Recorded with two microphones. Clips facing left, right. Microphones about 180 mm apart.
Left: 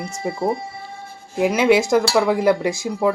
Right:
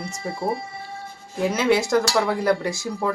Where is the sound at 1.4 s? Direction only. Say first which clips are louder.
Left 4 dB; 15° left (ahead or behind).